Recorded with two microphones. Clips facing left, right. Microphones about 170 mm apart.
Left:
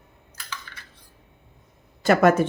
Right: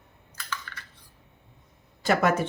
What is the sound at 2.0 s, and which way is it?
Speech, 50° left (ahead or behind).